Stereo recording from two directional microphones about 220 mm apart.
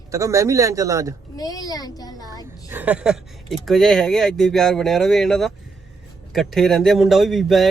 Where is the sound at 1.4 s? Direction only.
15° left (ahead or behind).